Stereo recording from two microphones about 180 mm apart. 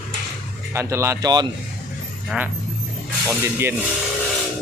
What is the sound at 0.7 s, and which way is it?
Speech, 15° right (ahead or behind).